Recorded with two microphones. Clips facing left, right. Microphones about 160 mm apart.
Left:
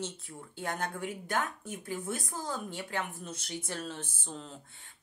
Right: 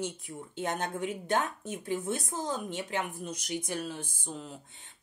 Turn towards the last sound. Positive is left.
turn(degrees=-10)  # may be behind; listen again after turning